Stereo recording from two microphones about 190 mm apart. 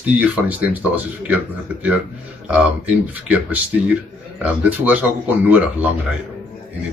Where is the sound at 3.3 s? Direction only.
10° right (ahead or behind).